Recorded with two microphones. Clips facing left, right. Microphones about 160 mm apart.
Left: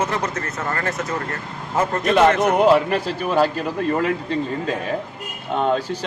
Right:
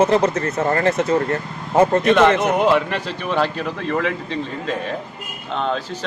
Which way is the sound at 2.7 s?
40° left (ahead or behind).